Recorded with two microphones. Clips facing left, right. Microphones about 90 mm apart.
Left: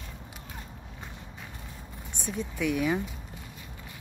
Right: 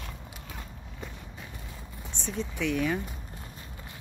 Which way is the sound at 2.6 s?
10° left (ahead or behind).